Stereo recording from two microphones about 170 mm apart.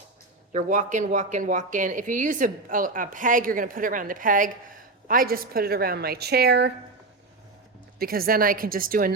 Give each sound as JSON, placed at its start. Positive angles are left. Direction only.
{"t": 0.5, "sound": "a woman's voice", "side_deg": -45}
{"t": 7.9, "sound": "a woman's voice", "side_deg": -60}